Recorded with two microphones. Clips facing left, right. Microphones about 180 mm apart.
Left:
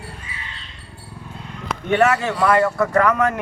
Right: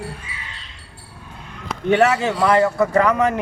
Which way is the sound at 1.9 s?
20° right (ahead or behind).